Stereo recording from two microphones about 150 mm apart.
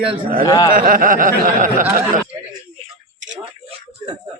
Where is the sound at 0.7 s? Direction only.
70° right (ahead or behind).